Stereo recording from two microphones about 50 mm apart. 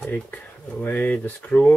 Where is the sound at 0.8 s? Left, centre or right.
Left.